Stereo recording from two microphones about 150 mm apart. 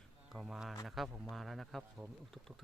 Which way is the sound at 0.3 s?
Centre (ahead or behind).